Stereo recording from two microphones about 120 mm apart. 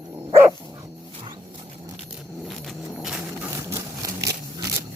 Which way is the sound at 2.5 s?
Centre (ahead or behind).